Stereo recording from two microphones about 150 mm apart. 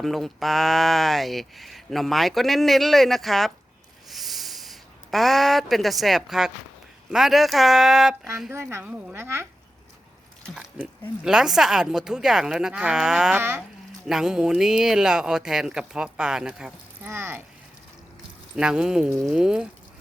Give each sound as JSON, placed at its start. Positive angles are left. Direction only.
{"t": 0.0, "sound": "speech", "side_deg": 0}
{"t": 4.1, "sound": "a sound", "side_deg": 0}
{"t": 7.1, "sound": "speech", "side_deg": 0}
{"t": 8.5, "sound": "a woman's voice", "side_deg": -15}
{"t": 10.5, "sound": "a woman's voice", "side_deg": -5}
{"t": 18.5, "sound": "speech", "side_deg": -5}